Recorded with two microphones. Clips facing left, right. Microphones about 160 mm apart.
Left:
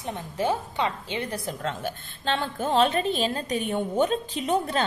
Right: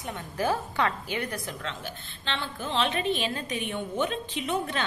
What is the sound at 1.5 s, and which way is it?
A woman's voice, 45° left (ahead or behind).